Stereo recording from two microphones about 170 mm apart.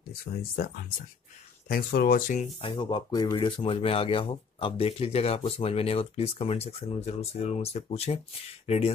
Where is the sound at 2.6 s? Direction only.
30° left (ahead or behind).